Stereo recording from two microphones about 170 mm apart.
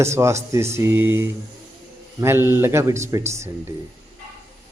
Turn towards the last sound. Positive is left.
turn(degrees=-15)  # may be behind; listen again after turning